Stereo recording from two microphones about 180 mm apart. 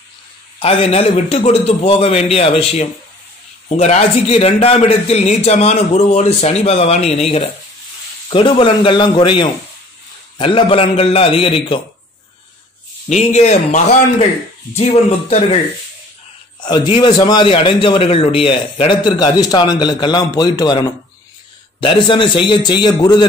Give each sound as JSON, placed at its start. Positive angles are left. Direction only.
{"t": 0.6, "sound": "a man's voice", "side_deg": 30}
{"t": 13.1, "sound": "a man's voice", "side_deg": 40}
{"t": 16.6, "sound": "a man's voice", "side_deg": 25}